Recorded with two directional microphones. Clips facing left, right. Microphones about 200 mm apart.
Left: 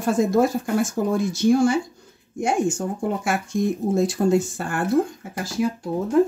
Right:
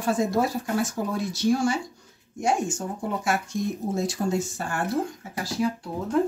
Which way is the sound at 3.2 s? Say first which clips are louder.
Left 3 dB; 55° left (ahead or behind).